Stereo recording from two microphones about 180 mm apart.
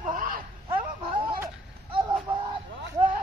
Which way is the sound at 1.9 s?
30° right (ahead or behind).